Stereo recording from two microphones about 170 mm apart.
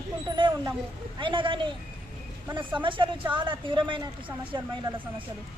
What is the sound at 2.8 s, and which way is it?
Speech, 30° right (ahead or behind).